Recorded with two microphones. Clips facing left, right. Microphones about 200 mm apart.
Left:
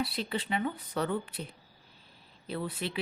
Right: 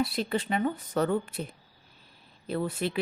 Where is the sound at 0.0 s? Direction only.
45° right (ahead or behind).